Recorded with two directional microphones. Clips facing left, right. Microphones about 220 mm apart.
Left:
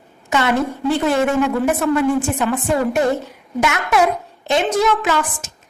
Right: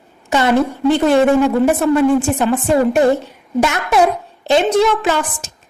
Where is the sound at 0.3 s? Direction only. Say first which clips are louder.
Right 3 dB; 35° right (ahead or behind).